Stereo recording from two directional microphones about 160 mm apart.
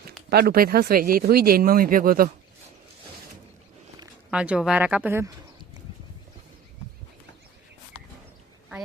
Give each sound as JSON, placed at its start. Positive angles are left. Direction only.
{"t": 0.3, "sound": "speech", "side_deg": -75}
{"t": 4.3, "sound": "speech", "side_deg": -5}